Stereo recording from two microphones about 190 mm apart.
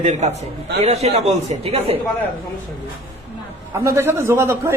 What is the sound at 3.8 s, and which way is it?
Speech, 15° right (ahead or behind).